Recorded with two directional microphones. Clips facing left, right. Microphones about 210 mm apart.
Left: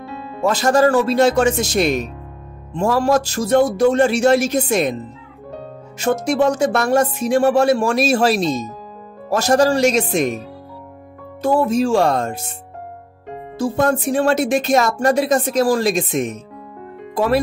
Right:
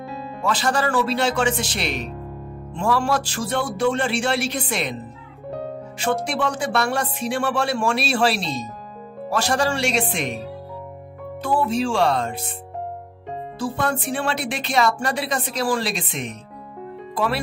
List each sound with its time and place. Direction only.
0.0 s music: centre (ahead or behind)
0.4 s speech: 45° left (ahead or behind)
5.9 s speech: 40° left (ahead or behind)
11.4 s speech: 45° left (ahead or behind)
13.6 s speech: 45° left (ahead or behind)